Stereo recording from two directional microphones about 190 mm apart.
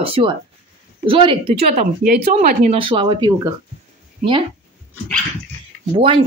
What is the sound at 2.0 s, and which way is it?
Speech, 45° right (ahead or behind).